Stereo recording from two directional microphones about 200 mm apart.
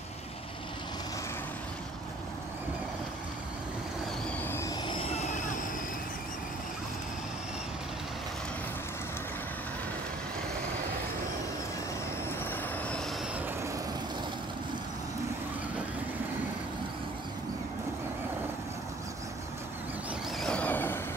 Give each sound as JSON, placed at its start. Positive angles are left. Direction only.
{"t": 4.4, "sound": "vehicle", "side_deg": 10}
{"t": 12.4, "sound": "vehicle", "side_deg": 5}
{"t": 20.3, "sound": "vehicle", "side_deg": 5}